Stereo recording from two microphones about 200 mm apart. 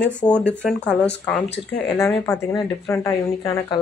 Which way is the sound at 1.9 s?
15° left (ahead or behind).